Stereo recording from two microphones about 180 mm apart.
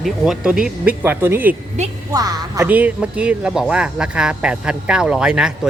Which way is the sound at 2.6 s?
10° right (ahead or behind).